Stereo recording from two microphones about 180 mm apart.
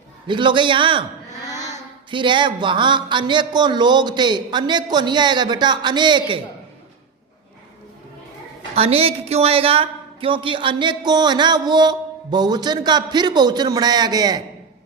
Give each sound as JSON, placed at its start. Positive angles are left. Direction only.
{"t": 0.3, "sound": "a man's voice", "side_deg": -25}
{"t": 2.0, "sound": "a man's voice", "side_deg": -25}
{"t": 8.7, "sound": "a man's voice", "side_deg": -35}